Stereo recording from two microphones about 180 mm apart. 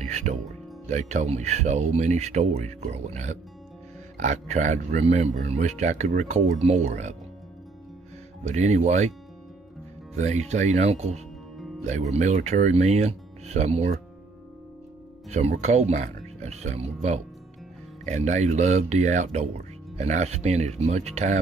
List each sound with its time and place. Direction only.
0.0 s speech: 40° right (ahead or behind)
8.5 s speech: 40° right (ahead or behind)
10.1 s speech: 40° right (ahead or behind)
15.2 s speech: 40° right (ahead or behind)